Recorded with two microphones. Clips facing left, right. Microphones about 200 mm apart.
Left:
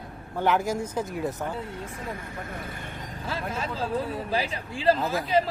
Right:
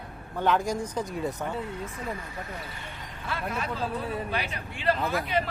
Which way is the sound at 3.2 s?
30° left (ahead or behind).